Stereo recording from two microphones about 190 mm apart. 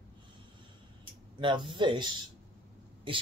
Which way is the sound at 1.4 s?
25° right (ahead or behind).